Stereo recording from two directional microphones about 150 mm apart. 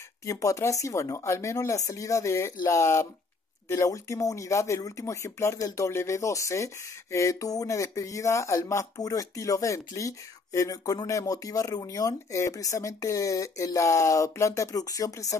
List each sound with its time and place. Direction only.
0.2 s speech: 20° left (ahead or behind)